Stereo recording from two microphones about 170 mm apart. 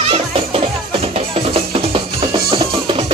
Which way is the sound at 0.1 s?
35° right (ahead or behind).